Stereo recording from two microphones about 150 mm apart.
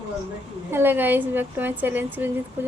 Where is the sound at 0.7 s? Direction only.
15° right (ahead or behind).